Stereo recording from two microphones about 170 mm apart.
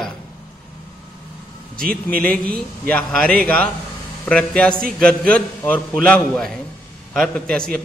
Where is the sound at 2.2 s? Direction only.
5° left (ahead or behind).